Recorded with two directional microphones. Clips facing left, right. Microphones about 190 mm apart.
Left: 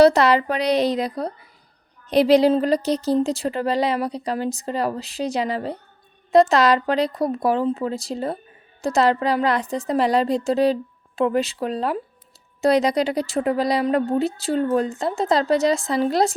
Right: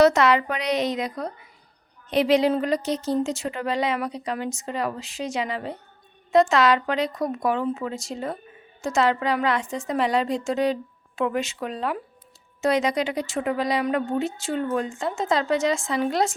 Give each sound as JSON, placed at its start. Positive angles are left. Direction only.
{"t": 0.0, "sound": "speech", "side_deg": 35}